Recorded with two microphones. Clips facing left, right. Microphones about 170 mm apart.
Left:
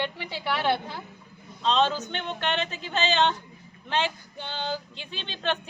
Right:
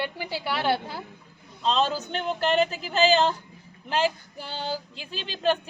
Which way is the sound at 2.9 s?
35° right (ahead or behind).